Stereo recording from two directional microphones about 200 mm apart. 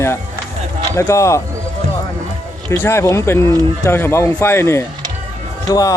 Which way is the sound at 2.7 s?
10° left (ahead or behind).